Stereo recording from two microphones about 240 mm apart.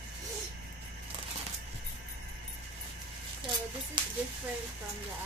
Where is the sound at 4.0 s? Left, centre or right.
Centre.